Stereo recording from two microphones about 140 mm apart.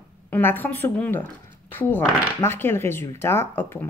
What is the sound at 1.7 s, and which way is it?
Speech, 15° left (ahead or behind).